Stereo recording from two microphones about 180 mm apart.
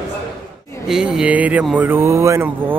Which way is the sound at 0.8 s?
5° right (ahead or behind).